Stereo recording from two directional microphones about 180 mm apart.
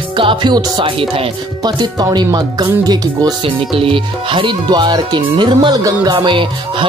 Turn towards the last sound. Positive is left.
turn(degrees=-25)  # may be behind; listen again after turning